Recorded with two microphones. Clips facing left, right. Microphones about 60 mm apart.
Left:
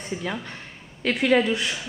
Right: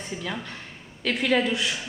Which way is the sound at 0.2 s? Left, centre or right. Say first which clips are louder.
Left 2 dB; centre.